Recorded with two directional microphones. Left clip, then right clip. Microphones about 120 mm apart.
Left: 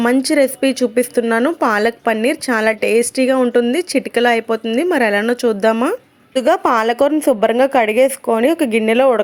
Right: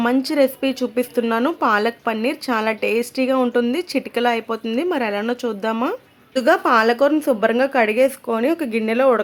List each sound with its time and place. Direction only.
0.0 s a woman's voice: 30° left (ahead or behind)